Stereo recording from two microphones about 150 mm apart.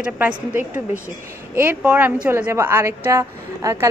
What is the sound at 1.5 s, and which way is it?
A woman's voice, 10° right (ahead or behind).